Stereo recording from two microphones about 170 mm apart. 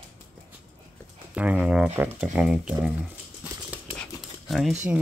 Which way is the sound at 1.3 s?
5° right (ahead or behind).